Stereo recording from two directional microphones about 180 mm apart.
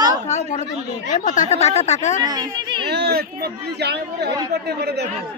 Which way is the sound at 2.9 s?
65° right (ahead or behind).